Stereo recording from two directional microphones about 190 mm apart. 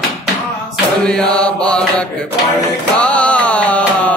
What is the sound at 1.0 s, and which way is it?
Mantra, 5° left (ahead or behind).